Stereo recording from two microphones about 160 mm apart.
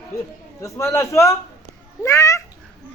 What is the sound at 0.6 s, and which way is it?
A man's voice, 20° left (ahead or behind).